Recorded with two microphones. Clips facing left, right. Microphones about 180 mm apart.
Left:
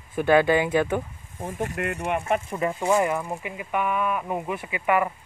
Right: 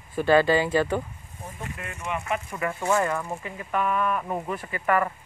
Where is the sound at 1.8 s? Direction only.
60° left (ahead or behind).